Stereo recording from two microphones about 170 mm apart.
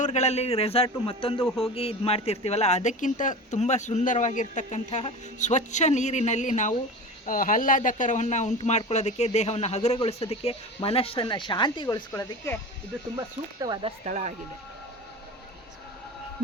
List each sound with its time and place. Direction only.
0.0 s a man's voice: 40° left (ahead or behind); by 12.5 s 20° left (ahead or behind)
13.1 s speech: 25° right (ahead or behind)
14.0 s speech: 45° right (ahead or behind)